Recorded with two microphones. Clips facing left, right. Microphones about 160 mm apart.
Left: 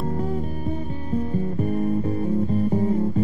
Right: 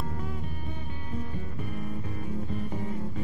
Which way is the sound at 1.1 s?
35° left (ahead or behind).